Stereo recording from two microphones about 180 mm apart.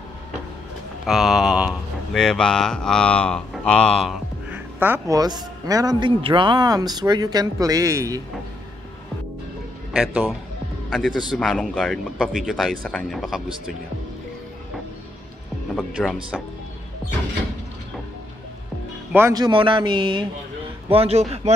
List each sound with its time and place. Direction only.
1.0 s speech: centre (ahead or behind); by 8.2 s 15° right (ahead or behind)
9.9 s a man's voice: 5° right (ahead or behind)
15.7 s speech: 5° left (ahead or behind)
19.1 s a man's voice: 20° right (ahead or behind); by 21.5 s 35° right (ahead or behind)